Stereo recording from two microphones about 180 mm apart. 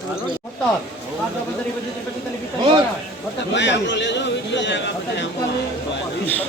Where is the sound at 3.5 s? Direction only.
80° left.